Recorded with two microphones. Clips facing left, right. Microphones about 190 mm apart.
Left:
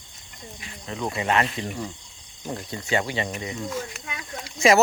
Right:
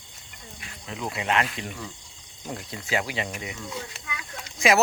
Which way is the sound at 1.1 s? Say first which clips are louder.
Left 2 dB; centre (ahead or behind).